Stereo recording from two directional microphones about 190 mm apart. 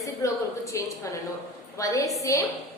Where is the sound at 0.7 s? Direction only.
15° left (ahead or behind).